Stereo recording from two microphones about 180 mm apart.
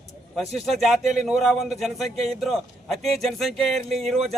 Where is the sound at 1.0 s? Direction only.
40° right (ahead or behind).